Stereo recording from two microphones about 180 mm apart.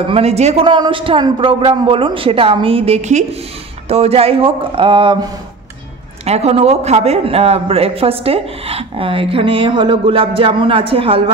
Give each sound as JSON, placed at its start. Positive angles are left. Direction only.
{"t": 0.0, "sound": "a man's voice", "side_deg": -35}